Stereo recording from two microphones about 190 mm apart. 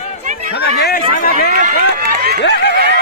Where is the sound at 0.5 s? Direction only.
60° left (ahead or behind).